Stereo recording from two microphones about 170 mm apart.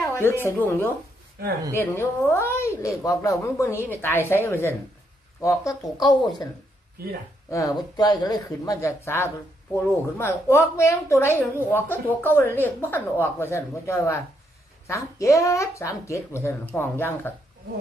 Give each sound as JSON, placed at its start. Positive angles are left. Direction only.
{"t": 0.0, "sound": "a woman's voice", "side_deg": 15}
{"t": 7.5, "sound": "a woman's voice", "side_deg": 20}